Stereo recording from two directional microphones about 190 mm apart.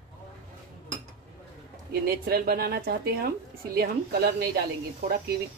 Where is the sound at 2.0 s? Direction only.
55° right (ahead or behind).